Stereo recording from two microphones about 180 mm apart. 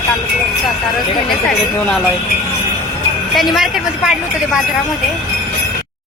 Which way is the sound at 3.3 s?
Centre (ahead or behind).